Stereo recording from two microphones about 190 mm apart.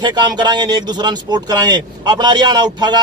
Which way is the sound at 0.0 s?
20° right (ahead or behind).